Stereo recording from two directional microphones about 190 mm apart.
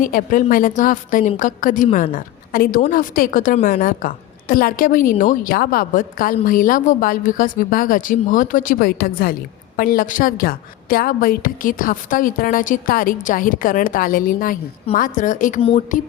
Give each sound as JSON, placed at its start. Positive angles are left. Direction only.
{"t": 0.0, "sound": "a woman's voice", "side_deg": 45}